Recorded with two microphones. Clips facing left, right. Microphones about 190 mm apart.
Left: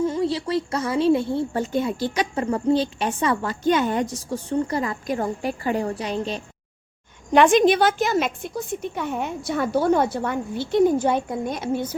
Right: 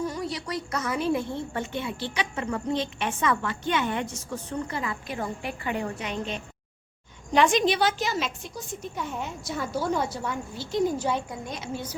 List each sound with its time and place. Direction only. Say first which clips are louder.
0.0 s a woman's voice: left 8 dB; 25° left (ahead or behind)
7.3 s a woman's voice: left 6 dB; 55° left (ahead or behind)